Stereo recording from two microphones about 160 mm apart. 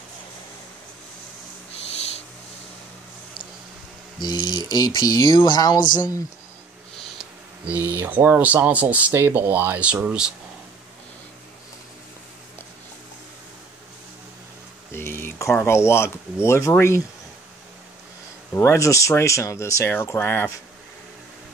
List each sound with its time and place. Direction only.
4.2 s speech: 25° left (ahead or behind)
7.6 s speech: 10° right (ahead or behind)
14.9 s a sound: 15° left (ahead or behind)
16.4 s speech: 15° left (ahead or behind)
18.5 s speech: 15° left (ahead or behind)